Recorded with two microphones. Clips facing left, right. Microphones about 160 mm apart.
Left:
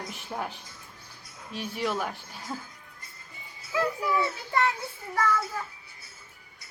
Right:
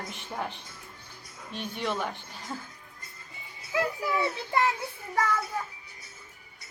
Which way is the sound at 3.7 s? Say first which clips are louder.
Left 1 dB; 20° right (ahead or behind).